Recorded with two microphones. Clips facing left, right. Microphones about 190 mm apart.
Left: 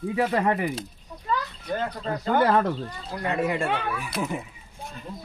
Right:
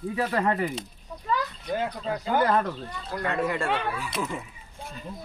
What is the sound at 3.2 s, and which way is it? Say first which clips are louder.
Speech: left 2 dB; 20° left (ahead or behind).